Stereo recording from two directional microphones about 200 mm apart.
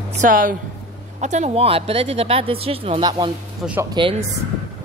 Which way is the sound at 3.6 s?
5° right (ahead or behind).